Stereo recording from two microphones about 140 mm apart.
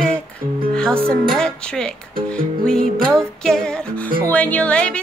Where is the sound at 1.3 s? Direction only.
5° left (ahead or behind).